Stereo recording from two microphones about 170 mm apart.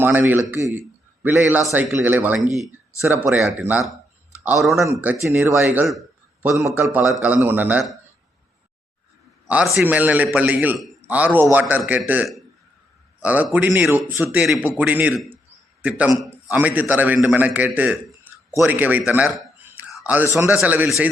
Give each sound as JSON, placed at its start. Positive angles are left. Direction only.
{"t": 0.0, "sound": "a man's voice", "side_deg": -10}
{"t": 4.8, "sound": "a man's voice", "side_deg": -10}
{"t": 9.5, "sound": "a man's voice", "side_deg": -10}